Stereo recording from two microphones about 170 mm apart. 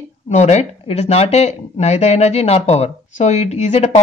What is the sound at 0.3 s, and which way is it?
Speech, 40° left (ahead or behind).